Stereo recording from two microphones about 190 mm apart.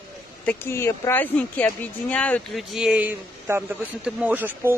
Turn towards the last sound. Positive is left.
turn(degrees=-10)  # may be behind; listen again after turning